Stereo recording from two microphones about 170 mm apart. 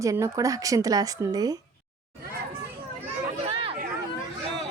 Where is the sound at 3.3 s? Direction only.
35° right (ahead or behind).